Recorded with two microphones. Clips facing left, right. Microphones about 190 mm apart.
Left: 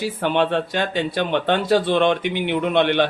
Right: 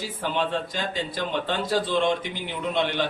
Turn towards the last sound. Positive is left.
turn(degrees=65)  # may be behind; listen again after turning